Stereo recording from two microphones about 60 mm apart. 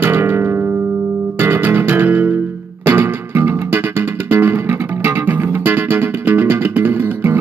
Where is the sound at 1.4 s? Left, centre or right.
Right.